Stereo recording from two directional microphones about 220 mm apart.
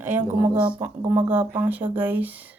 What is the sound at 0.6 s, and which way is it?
Speech, 20° right (ahead or behind).